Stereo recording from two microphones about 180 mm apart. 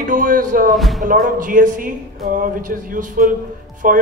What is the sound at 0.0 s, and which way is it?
Speech, 45° right (ahead or behind).